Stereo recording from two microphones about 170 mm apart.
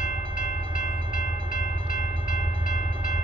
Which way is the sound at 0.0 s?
50° left (ahead or behind).